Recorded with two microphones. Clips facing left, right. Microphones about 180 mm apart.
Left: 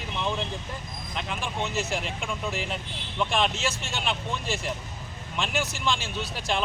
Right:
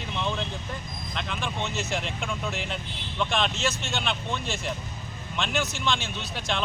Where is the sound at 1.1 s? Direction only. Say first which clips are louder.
Even; 5° left (ahead or behind).